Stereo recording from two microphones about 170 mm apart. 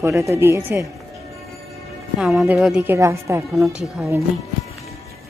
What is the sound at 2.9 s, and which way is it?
A woman's voice, 15° right (ahead or behind).